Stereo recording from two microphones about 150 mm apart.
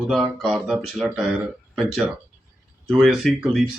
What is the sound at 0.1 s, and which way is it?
Speech, centre (ahead or behind).